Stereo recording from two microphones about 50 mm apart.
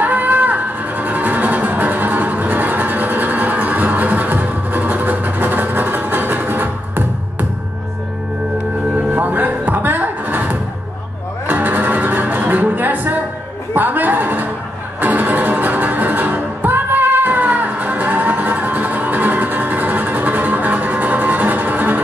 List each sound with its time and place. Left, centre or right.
0.0 s music: right
9.1 s music: right
13.7 s a sound: right
15.0 s music: right